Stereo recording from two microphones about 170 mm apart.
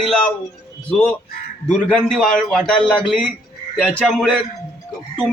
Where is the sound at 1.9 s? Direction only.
5° left (ahead or behind).